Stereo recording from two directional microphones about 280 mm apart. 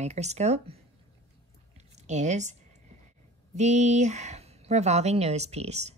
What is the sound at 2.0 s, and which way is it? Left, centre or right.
Speech, right.